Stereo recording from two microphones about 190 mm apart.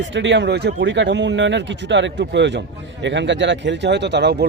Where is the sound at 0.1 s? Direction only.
70° right (ahead or behind).